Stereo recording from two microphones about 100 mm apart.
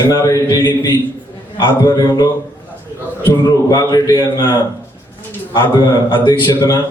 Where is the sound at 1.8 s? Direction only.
40° left (ahead or behind).